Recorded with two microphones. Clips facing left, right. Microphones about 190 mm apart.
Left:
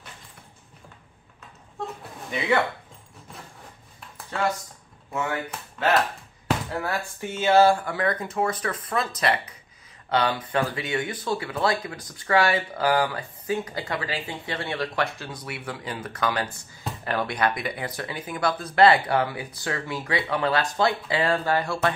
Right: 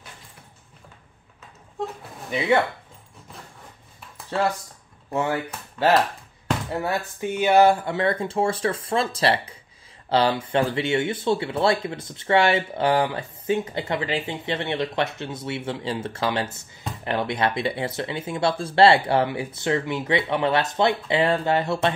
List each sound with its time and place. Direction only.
5.1 s speech: 30° right (ahead or behind)